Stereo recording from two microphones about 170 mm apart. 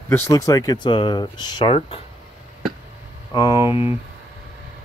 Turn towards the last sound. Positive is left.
turn(degrees=30)  # may be behind; listen again after turning